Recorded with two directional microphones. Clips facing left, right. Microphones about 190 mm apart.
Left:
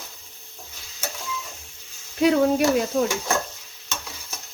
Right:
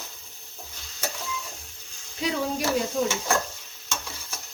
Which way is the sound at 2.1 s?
60° left (ahead or behind).